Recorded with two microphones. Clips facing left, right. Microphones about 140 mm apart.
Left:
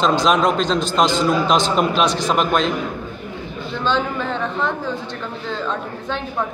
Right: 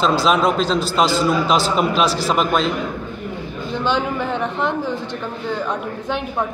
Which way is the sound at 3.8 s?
15° right (ahead or behind).